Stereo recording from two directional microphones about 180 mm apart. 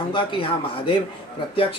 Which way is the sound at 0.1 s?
25° left (ahead or behind).